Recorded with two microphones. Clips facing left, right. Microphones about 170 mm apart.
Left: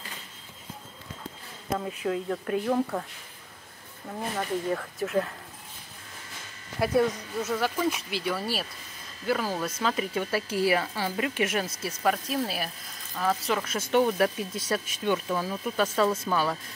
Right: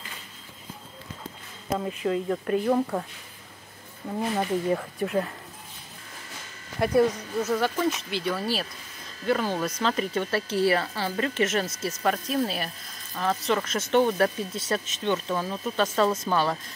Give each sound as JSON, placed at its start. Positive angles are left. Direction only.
{"t": 1.8, "sound": "speech", "side_deg": 0}
{"t": 4.2, "sound": "speech", "side_deg": -15}
{"t": 4.9, "sound": "speech", "side_deg": 0}
{"t": 6.8, "sound": "speech", "side_deg": 0}